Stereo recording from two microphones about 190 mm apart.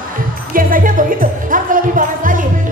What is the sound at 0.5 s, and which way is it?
Music, 45° right (ahead or behind).